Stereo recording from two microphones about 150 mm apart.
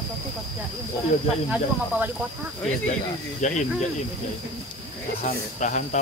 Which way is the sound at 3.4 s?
55° left (ahead or behind).